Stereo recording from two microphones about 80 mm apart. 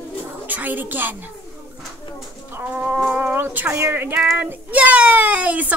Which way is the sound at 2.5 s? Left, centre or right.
Right.